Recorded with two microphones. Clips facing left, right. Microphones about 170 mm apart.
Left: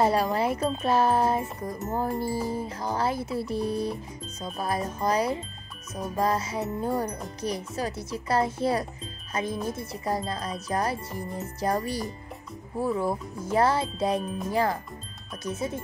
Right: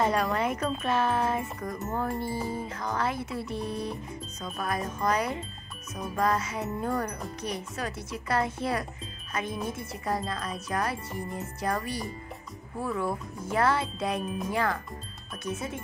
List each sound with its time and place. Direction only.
0.0 s speech: 35° left (ahead or behind)